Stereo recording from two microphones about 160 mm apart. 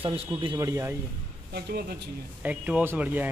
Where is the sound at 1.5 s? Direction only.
90° right.